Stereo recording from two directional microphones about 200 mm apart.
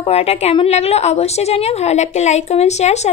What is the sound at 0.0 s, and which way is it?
A woman's voice, 30° left (ahead or behind).